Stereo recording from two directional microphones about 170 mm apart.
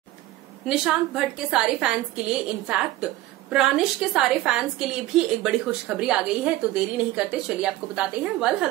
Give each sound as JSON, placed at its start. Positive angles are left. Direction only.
{"t": 0.7, "sound": "a woman's voice", "side_deg": -5}